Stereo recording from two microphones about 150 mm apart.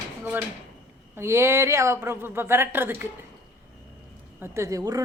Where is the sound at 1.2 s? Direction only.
20° right (ahead or behind).